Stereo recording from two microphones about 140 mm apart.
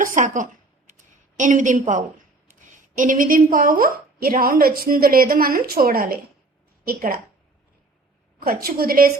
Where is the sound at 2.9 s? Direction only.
70° right (ahead or behind); by 7.2 s 90° right.